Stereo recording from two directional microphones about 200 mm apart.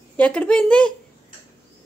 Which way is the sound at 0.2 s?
5° left (ahead or behind).